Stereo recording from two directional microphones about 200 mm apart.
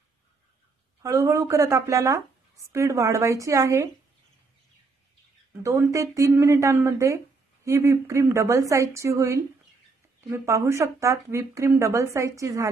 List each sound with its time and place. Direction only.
1.0 s a woman's voice: 15° right (ahead or behind)
5.6 s a woman's voice: 15° right (ahead or behind)